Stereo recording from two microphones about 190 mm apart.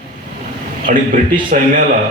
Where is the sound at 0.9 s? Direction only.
40° right (ahead or behind).